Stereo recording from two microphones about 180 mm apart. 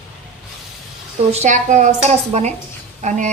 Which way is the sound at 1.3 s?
40° right (ahead or behind).